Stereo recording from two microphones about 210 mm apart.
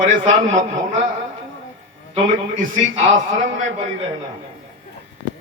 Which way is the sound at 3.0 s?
40° right (ahead or behind).